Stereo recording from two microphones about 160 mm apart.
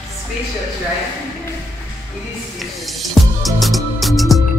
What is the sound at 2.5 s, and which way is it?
Music, centre (ahead or behind).